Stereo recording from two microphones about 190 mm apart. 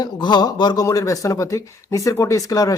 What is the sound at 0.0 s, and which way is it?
Speech, 25° left (ahead or behind).